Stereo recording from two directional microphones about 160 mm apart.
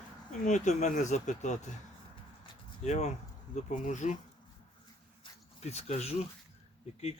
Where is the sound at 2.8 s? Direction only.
45° left (ahead or behind).